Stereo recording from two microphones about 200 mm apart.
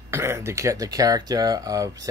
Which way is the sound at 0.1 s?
15° right (ahead or behind).